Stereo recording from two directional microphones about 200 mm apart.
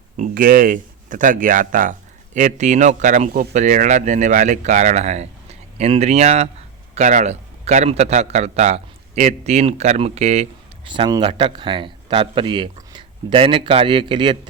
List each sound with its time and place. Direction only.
0.2 s speech: 45° right (ahead or behind); by 14.3 s 25° right (ahead or behind)